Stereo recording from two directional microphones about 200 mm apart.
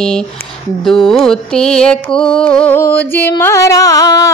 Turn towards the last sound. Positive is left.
turn(degrees=15)  # may be behind; listen again after turning